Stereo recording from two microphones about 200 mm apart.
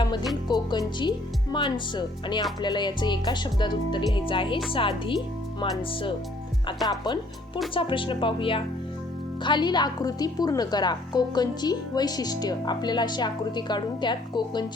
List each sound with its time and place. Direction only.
0.0 s music: 20° left (ahead or behind)
0.4 s a woman's voice: 20° left (ahead or behind)
7.0 s a woman's voice: 20° left (ahead or behind)